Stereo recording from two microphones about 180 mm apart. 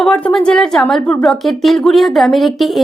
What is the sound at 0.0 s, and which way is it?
Speech, 5° left (ahead or behind).